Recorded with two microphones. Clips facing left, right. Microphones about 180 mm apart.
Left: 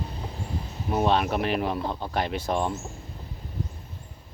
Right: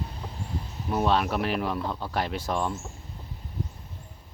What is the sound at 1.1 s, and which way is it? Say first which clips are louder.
Speech: left 1 dB; centre (ahead or behind).